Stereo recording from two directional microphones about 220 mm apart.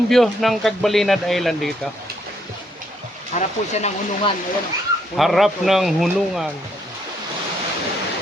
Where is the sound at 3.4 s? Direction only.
30° left (ahead or behind).